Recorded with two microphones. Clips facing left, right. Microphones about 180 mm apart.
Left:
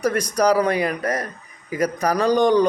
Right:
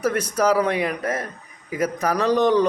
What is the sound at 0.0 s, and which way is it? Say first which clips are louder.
A man's voice: left 1 dB; 5° right (ahead or behind).